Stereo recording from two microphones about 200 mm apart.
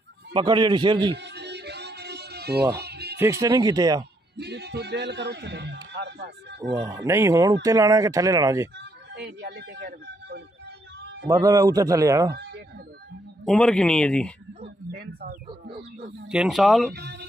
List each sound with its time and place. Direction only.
0.3 s a man's voice: 25° right (ahead or behind)
1.1 s music: 60° right (ahead or behind)
3.2 s a man's voice: 15° right (ahead or behind)
4.4 s a man's voice: 55° right (ahead or behind)
6.6 s a man's voice: 15° right (ahead or behind)
9.1 s speech: 55° right (ahead or behind)
11.2 s a man's voice: 20° right (ahead or behind)
13.5 s speech: 5° left (ahead or behind)
14.9 s speech: 50° right (ahead or behind)
16.3 s speech: 5° right (ahead or behind)
16.9 s speech: 55° right (ahead or behind)